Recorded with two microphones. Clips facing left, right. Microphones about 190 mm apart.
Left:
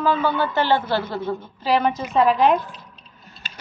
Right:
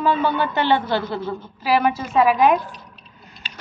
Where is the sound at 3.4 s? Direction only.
45° left (ahead or behind).